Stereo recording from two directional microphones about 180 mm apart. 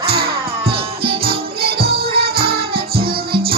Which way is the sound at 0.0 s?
30° right (ahead or behind).